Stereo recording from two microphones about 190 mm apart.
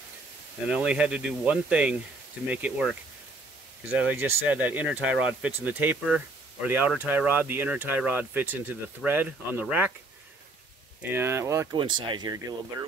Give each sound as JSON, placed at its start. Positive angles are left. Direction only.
{"t": 0.7, "sound": "speech", "side_deg": -5}
{"t": 4.0, "sound": "speech", "side_deg": -10}
{"t": 11.0, "sound": "speech", "side_deg": -10}
{"t": 11.8, "sound": "speech", "side_deg": -25}